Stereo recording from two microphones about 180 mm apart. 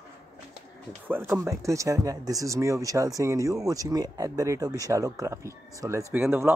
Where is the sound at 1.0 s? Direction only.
15° right (ahead or behind).